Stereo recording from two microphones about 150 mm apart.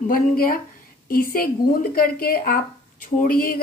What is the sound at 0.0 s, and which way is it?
A woman's voice, 75° left (ahead or behind).